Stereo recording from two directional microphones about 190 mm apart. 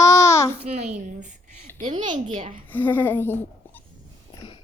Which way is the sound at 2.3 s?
30° right (ahead or behind).